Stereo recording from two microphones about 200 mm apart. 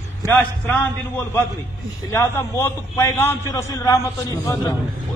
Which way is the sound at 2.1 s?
15° left (ahead or behind).